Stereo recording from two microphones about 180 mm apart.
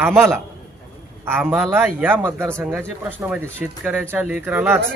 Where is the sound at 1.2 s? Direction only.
15° right (ahead or behind).